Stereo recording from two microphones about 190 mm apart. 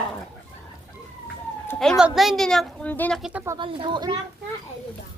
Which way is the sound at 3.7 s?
25° right (ahead or behind).